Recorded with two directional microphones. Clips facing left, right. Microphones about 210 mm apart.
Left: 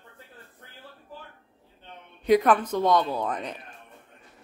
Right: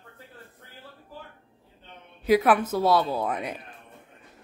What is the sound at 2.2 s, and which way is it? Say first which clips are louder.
A woman's voice: even; 5° right (ahead or behind).